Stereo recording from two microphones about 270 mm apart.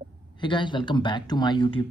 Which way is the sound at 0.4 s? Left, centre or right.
Centre.